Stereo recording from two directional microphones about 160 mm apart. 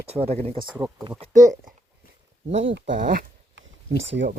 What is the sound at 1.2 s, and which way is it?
Speech, 50° right (ahead or behind).